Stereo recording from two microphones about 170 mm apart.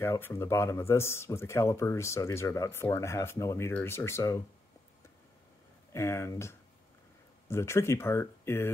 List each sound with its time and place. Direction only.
0.0 s speech: 15° left (ahead or behind)
5.9 s speech: 15° left (ahead or behind)